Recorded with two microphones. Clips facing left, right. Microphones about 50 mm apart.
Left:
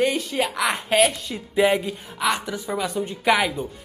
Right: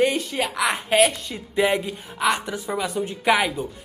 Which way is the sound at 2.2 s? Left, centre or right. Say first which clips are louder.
Right 1 dB; centre.